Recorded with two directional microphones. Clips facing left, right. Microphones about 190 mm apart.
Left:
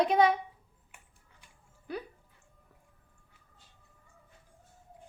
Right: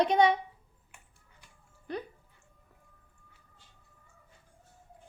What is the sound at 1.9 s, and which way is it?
Speech, 10° left (ahead or behind).